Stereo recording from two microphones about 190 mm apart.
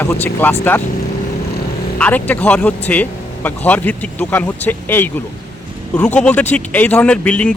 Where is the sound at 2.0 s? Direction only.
10° left (ahead or behind).